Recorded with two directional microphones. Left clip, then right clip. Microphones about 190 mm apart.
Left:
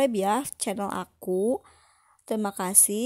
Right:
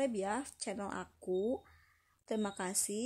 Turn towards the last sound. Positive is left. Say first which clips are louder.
# left 11 dB
turn(degrees=40)  # may be behind; listen again after turning